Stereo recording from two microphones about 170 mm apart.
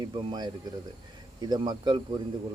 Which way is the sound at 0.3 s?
25° right (ahead or behind).